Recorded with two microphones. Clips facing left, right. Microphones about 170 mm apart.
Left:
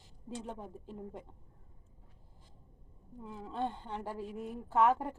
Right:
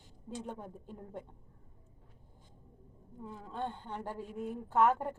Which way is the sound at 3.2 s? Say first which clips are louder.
Left 2 dB; 10° left (ahead or behind).